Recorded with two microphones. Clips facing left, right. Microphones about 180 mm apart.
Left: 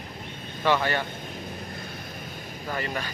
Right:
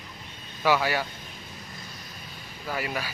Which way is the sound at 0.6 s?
10° right (ahead or behind).